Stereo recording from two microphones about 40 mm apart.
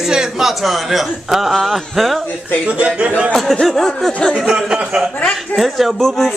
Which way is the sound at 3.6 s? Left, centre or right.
Centre.